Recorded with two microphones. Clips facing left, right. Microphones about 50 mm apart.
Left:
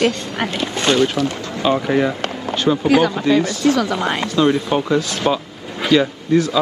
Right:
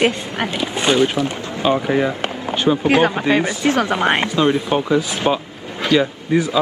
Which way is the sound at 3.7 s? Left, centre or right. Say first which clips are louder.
Right 2 dB; right.